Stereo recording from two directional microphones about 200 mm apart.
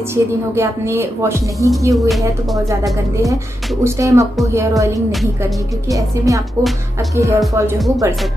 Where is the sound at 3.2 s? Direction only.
15° right (ahead or behind).